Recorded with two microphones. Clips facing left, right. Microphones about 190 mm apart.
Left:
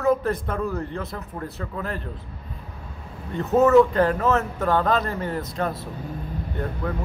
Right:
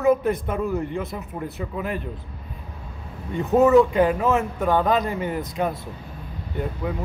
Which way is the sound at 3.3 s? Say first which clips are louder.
Right 1 dB; 15° right (ahead or behind).